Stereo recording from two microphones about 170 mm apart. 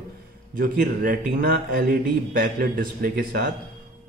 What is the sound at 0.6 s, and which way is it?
Speech, 55° right (ahead or behind).